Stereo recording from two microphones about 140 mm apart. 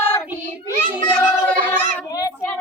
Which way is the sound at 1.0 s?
10° left (ahead or behind).